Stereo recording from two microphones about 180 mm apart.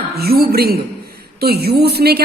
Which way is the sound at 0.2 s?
60° right (ahead or behind).